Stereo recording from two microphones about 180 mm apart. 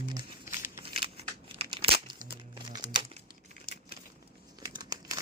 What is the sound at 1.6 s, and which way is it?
Crumpling, 30° right (ahead or behind).